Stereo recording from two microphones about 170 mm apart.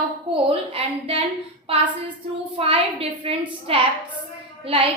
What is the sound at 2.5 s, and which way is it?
A woman's voice, 30° right (ahead or behind).